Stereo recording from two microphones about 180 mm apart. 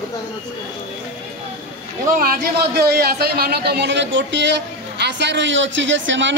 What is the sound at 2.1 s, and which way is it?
A man's voice, 55° right (ahead or behind).